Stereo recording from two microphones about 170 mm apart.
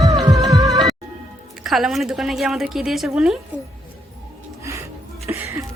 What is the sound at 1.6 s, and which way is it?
A woman's voice, centre (ahead or behind).